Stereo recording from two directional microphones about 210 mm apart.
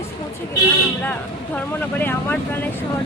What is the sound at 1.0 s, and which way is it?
Speech, 10° left (ahead or behind).